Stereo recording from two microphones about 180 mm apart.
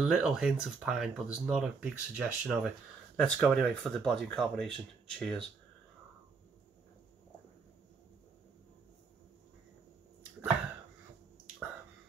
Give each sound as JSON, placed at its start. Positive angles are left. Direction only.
{"t": 0.0, "sound": "speech", "side_deg": -5}